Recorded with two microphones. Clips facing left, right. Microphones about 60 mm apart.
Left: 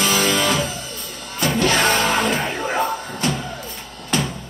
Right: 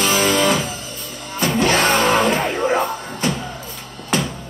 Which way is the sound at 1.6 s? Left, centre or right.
Centre.